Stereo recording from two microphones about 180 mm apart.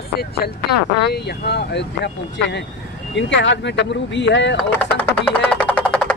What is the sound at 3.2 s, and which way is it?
Speech, 80° left.